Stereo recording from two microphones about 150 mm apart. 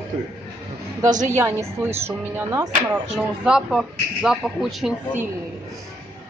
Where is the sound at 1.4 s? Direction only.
20° right (ahead or behind).